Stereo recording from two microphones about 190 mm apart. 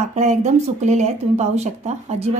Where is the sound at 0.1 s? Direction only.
35° right (ahead or behind).